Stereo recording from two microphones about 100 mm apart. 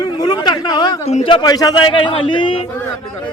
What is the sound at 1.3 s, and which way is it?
Speech, 40° left (ahead or behind).